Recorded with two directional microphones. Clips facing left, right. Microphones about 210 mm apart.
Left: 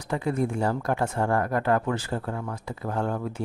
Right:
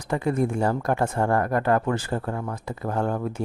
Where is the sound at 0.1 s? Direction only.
50° right (ahead or behind).